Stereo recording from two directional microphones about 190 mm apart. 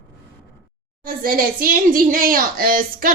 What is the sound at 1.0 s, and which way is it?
Speech, 50° right (ahead or behind).